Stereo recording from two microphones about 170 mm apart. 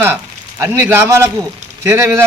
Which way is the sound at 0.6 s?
15° right (ahead or behind).